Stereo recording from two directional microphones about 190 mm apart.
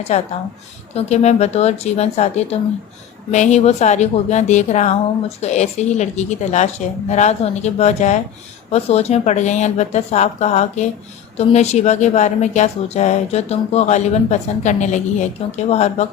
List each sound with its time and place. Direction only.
0.1 s a woman's voice: 40° left (ahead or behind)